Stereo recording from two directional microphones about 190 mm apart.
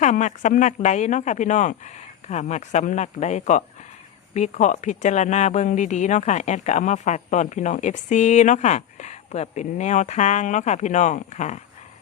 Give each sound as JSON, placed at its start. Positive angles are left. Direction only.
{"t": 0.0, "sound": "speech", "side_deg": 40}